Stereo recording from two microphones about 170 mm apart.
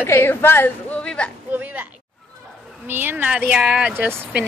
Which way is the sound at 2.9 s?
10° right (ahead or behind).